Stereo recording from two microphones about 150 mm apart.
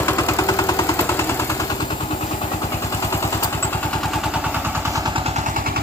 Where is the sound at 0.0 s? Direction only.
20° left (ahead or behind).